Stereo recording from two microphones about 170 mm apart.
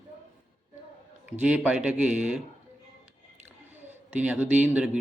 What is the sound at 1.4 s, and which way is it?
Speech, 5° right (ahead or behind).